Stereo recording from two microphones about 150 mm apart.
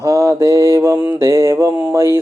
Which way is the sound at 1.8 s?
20° right (ahead or behind).